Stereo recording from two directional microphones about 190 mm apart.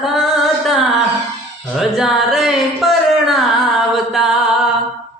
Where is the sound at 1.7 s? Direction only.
Centre (ahead or behind).